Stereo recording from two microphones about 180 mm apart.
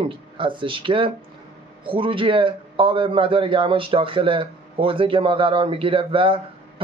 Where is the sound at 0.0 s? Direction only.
25° right (ahead or behind).